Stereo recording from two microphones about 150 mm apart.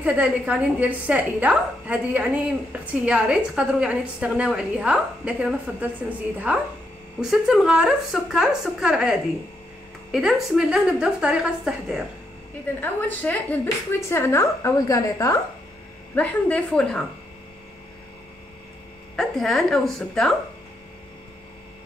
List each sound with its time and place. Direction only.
0.0 s a woman's voice: 10° right (ahead or behind)
12.8 s a woman's voice: 10° left (ahead or behind)
16.2 s a woman's voice: 10° left (ahead or behind)
19.1 s speech: centre (ahead or behind)